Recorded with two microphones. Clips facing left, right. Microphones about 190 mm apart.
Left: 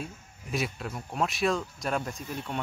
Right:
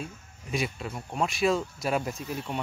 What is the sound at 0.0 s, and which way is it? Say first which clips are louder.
Speech: even; centre (ahead or behind).